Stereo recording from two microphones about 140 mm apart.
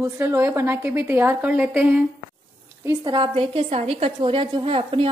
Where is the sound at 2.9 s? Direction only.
35° right (ahead or behind); by 4.1 s 50° right (ahead or behind).